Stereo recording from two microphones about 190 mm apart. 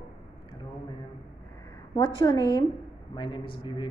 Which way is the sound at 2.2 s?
25° left (ahead or behind).